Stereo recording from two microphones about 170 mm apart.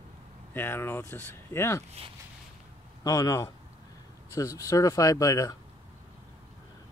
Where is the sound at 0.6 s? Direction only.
15° left (ahead or behind).